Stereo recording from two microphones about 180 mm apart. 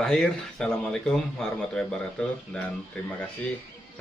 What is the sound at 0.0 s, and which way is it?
Speech, centre (ahead or behind).